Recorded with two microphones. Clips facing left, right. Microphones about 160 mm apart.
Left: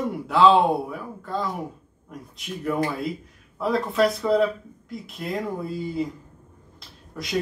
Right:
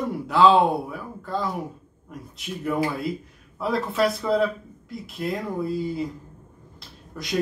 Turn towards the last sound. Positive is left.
turn(degrees=0)  # may be behind; listen again after turning